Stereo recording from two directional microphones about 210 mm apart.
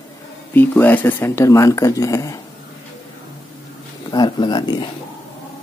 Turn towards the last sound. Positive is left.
turn(degrees=20)  # may be behind; listen again after turning